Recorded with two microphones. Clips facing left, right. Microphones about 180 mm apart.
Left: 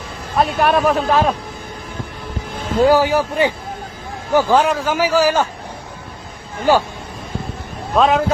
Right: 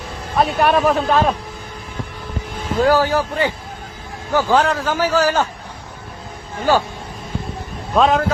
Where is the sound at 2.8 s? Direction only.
15° left (ahead or behind).